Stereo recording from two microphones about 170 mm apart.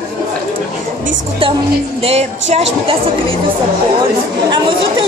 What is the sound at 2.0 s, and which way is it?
Music, 40° right (ahead or behind).